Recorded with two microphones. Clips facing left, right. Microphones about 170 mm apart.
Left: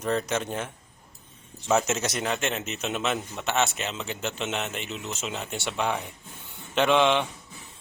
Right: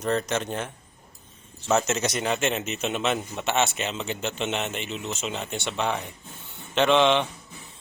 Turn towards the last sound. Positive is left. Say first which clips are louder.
# right 2 dB
turn(degrees=5)  # may be behind; listen again after turning